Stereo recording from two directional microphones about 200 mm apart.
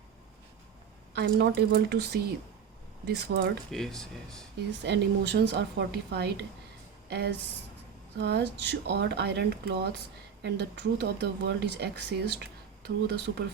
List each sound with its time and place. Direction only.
1.1 s speech: 60° right (ahead or behind)
3.7 s speech: centre (ahead or behind)
4.8 s speech: 60° right (ahead or behind)